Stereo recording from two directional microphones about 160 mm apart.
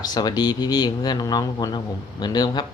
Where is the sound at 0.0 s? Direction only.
25° left (ahead or behind).